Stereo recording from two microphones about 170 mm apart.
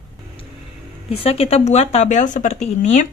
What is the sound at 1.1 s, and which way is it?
Speech, 35° left (ahead or behind).